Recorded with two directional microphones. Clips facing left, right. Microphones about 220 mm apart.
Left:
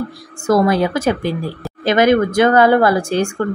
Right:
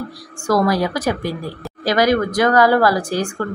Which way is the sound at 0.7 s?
25° left (ahead or behind).